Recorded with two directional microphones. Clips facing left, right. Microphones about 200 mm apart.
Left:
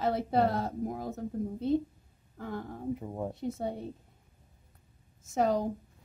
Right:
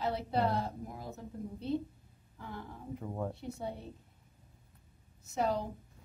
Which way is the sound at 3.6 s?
45° left (ahead or behind).